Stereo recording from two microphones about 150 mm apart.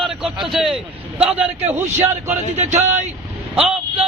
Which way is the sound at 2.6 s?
50° right (ahead or behind).